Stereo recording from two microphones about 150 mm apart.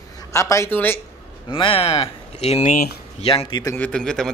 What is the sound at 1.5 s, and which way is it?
Speech, 35° left (ahead or behind).